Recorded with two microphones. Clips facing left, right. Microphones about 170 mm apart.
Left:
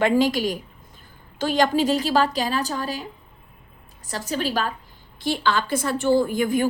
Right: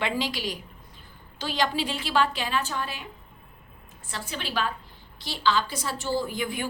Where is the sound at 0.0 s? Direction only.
45° left (ahead or behind).